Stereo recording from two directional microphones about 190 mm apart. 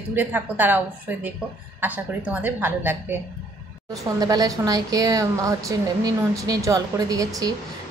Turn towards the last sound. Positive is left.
turn(degrees=-20)  # may be behind; listen again after turning